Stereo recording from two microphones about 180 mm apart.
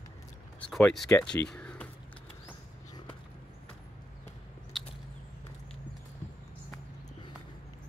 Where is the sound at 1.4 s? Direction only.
5° left (ahead or behind).